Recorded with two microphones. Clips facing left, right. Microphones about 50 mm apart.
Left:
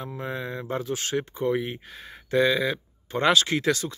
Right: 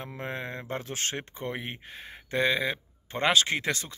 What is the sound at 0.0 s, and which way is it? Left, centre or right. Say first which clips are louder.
Speech: left 3 dB; right.